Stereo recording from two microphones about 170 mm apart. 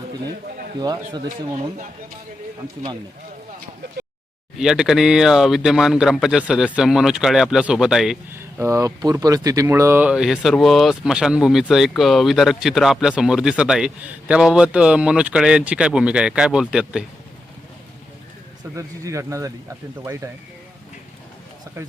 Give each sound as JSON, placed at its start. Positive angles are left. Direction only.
{"t": 0.8, "sound": "speech", "side_deg": -25}
{"t": 4.5, "sound": "speech", "side_deg": -5}
{"t": 8.3, "sound": "speech", "side_deg": -15}
{"t": 18.8, "sound": "speech", "side_deg": -20}